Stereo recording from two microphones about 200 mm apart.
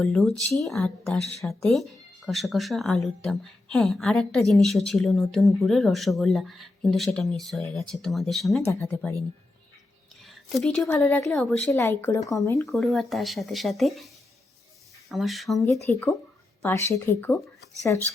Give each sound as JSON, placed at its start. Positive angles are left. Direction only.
{"t": 0.0, "sound": "speech", "side_deg": 0}
{"t": 8.7, "sound": "speech", "side_deg": 10}
{"t": 10.2, "sound": "speech", "side_deg": 0}
{"t": 12.6, "sound": "speech", "side_deg": 0}
{"t": 15.1, "sound": "speech", "side_deg": 0}